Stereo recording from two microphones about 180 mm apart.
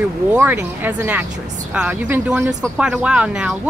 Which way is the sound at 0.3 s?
10° right (ahead or behind).